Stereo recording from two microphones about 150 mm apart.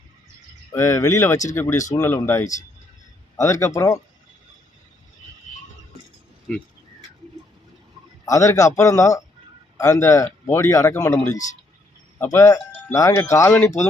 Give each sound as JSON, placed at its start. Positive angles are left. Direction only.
{"t": 0.7, "sound": "a man's voice", "side_deg": 20}
{"t": 6.5, "sound": "speech", "side_deg": 5}
{"t": 8.2, "sound": "a man's voice", "side_deg": 20}